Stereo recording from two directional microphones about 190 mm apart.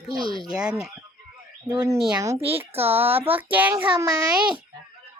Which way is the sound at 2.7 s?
10° right (ahead or behind).